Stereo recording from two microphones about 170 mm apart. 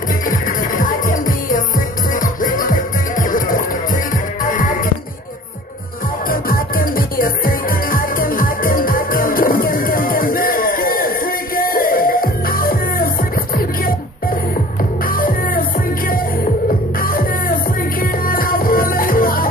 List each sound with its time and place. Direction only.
0.3 s music: 50° left (ahead or behind)
6.2 s music: 60° left (ahead or behind)
15.0 s music: 55° left (ahead or behind)
17.0 s music: 55° left (ahead or behind)